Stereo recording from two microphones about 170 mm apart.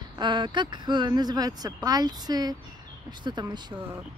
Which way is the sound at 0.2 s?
25° right (ahead or behind).